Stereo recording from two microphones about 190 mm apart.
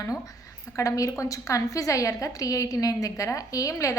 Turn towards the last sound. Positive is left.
turn(degrees=15)  # may be behind; listen again after turning